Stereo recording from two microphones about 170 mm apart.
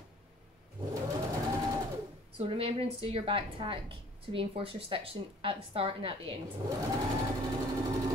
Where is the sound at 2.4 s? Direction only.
30° right (ahead or behind).